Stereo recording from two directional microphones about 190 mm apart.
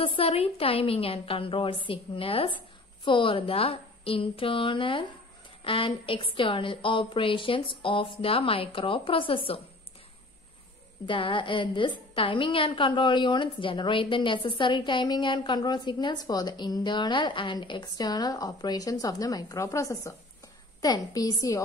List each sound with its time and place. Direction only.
0.0 s a woman's voice: 30° left (ahead or behind)
11.1 s a woman's voice: 25° left (ahead or behind)